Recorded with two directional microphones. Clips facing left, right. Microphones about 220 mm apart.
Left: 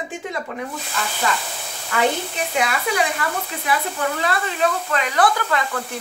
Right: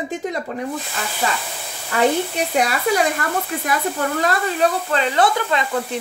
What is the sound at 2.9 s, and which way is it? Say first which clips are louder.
Speech: right 3 dB; 40° right (ahead or behind).